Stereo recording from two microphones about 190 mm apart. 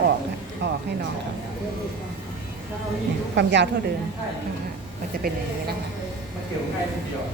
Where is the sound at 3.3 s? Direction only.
65° right (ahead or behind).